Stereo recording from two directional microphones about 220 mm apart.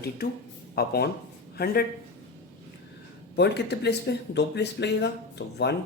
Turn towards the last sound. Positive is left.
turn(degrees=55)  # may be behind; listen again after turning